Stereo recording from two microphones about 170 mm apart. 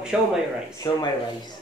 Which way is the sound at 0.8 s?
25° left (ahead or behind).